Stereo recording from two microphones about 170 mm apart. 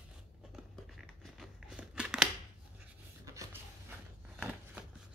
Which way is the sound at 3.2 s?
15° right (ahead or behind).